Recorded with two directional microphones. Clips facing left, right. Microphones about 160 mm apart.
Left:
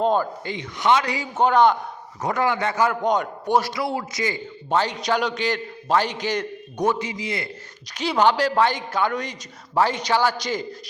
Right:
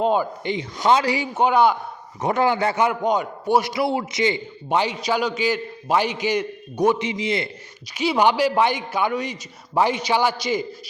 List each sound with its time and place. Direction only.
0.0 s a man's voice: 10° right (ahead or behind)
0.8 s a man's voice: 30° right (ahead or behind)
1.4 s a man's voice: 10° right (ahead or behind)
2.2 s a man's voice: 25° right (ahead or behind)
2.8 s a man's voice: 10° right (ahead or behind)
3.8 s a man's voice: 25° right (ahead or behind)
4.9 s a man's voice: centre (ahead or behind)
7.0 s a man's voice: 25° right (ahead or behind)
7.9 s a man's voice: 10° right (ahead or behind)